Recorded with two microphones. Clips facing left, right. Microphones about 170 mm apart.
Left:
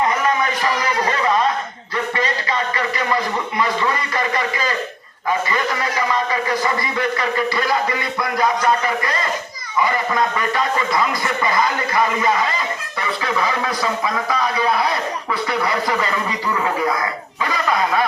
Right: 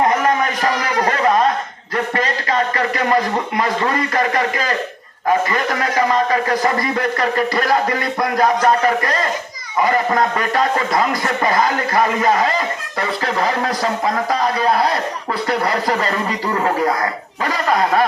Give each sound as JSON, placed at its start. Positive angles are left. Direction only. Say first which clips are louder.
{"t": 0.0, "sound": "a sound", "louder": "right 3 dB", "side_deg": -50}
{"t": 2.1, "sound": "a man's voice", "louder": "right 4 dB", "side_deg": -45}
{"t": 5.5, "sound": "a man's voice", "louder": "right 2 dB", "side_deg": -45}